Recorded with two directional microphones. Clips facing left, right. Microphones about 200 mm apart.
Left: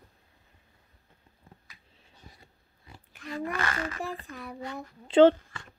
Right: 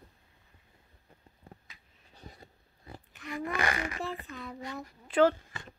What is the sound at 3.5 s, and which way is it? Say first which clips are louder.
Speech: right 3 dB; 15° right (ahead or behind).